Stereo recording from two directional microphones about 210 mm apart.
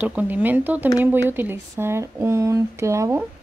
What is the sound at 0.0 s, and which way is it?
Speech, 5° right (ahead or behind).